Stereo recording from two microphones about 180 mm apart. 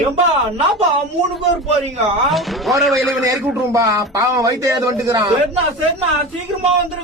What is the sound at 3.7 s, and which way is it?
A man's voice, 20° right (ahead or behind).